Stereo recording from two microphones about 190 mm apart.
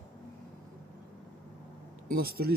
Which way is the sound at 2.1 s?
50° right (ahead or behind).